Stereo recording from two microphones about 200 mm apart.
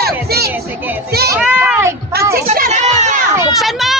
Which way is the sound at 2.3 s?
45° right (ahead or behind).